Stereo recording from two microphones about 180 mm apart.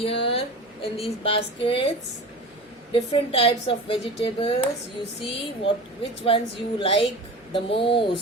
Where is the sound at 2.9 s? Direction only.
30° left (ahead or behind).